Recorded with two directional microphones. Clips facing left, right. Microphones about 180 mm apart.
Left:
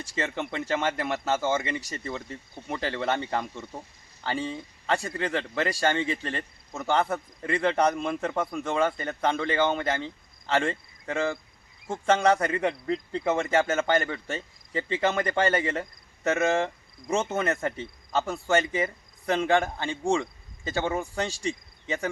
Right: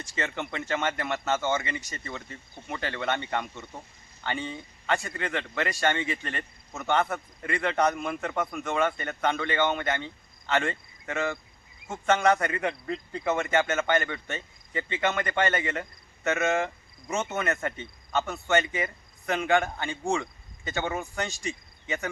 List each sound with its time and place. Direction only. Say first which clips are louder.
0.0 s speech: left 2 dB; 30° left (ahead or behind)
21.2 s cricket: left 3 dB; 30° left (ahead or behind)